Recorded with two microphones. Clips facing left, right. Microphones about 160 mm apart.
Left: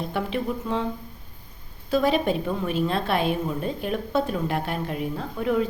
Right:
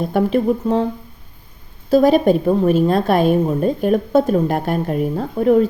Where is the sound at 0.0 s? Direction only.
45° right (ahead or behind).